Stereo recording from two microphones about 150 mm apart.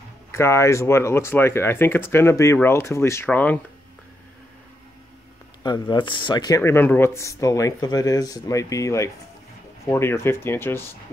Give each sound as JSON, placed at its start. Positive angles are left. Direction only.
{"t": 0.3, "sound": "speech", "side_deg": 15}
{"t": 5.6, "sound": "speech", "side_deg": 30}